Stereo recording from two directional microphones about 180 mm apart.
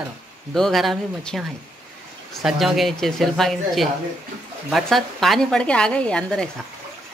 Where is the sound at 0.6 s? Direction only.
Centre (ahead or behind).